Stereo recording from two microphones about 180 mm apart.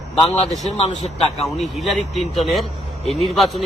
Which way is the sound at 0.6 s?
35° left (ahead or behind).